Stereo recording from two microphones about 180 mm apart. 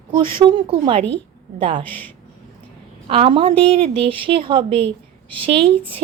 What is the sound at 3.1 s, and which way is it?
A woman's voice, 30° right (ahead or behind).